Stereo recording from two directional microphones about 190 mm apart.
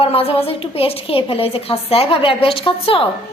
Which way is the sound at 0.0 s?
30° left (ahead or behind).